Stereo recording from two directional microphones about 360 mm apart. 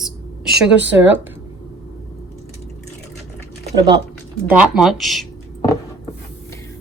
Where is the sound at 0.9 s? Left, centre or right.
Centre.